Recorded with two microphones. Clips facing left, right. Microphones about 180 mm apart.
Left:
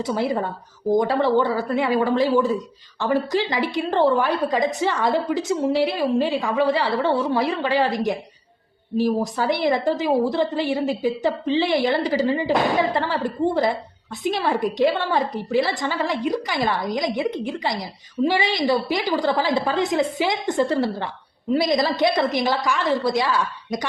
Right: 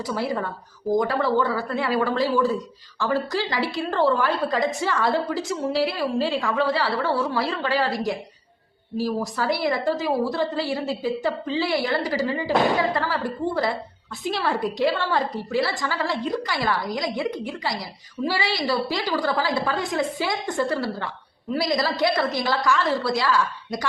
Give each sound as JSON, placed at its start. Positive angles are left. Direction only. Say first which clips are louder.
{"t": 0.0, "sound": "a woman's voice", "louder": "left 3 dB", "side_deg": 20}